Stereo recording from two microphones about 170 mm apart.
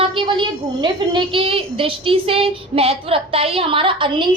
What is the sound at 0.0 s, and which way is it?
A woman's voice, 30° right (ahead or behind).